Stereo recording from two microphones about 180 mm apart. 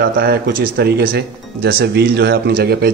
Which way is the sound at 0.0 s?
55° right (ahead or behind).